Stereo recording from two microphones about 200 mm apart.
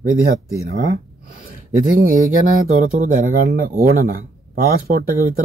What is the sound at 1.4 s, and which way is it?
Speech, 45° right (ahead or behind).